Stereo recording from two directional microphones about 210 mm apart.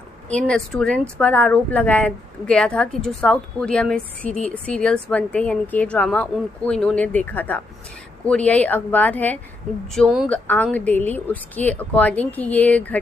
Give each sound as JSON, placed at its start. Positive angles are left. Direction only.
{"t": 0.3, "sound": "a woman's voice", "side_deg": 5}